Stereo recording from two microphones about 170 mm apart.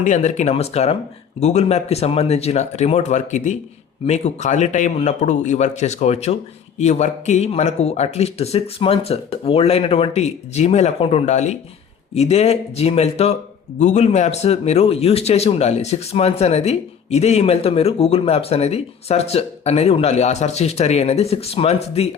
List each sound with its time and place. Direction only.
0.0 s speech: 45° left (ahead or behind)